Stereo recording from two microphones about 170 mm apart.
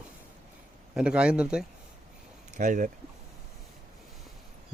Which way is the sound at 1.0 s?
5° right (ahead or behind).